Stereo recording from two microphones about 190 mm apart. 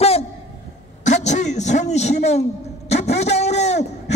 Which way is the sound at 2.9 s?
35° left (ahead or behind).